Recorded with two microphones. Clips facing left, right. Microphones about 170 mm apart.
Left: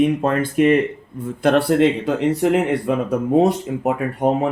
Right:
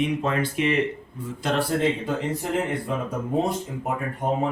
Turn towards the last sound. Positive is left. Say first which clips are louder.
# left 6 dB
turn(degrees=75)  # may be behind; listen again after turning